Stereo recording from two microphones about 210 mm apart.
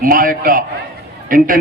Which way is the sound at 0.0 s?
40° right (ahead or behind).